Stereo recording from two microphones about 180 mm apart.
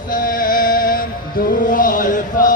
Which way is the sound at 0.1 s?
50° left (ahead or behind).